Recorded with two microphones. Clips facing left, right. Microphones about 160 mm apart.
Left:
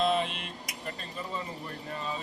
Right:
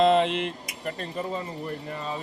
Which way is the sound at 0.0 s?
80° right.